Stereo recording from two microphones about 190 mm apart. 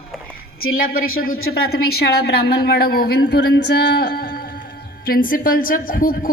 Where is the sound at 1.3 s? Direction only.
55° left (ahead or behind).